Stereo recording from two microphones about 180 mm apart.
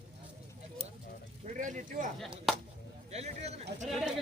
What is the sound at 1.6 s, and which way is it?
Speech, 45° right (ahead or behind).